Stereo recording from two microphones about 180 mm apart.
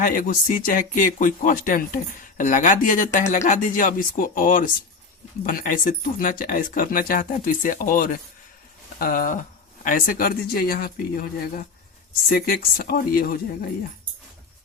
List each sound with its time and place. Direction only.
0.0 s speech: 50° left (ahead or behind)